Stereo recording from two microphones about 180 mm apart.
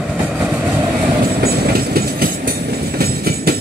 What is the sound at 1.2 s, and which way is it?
Train, 60° right (ahead or behind).